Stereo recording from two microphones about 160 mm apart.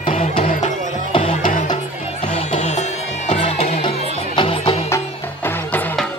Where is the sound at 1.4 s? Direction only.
60° left (ahead or behind).